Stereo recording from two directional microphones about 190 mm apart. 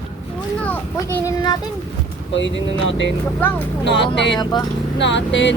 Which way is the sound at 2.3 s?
75° left (ahead or behind).